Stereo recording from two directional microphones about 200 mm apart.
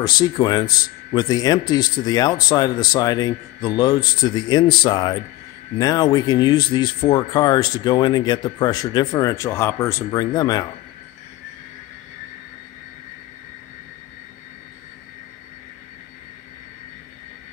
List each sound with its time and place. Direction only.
0.0 s speech: 20° left (ahead or behind)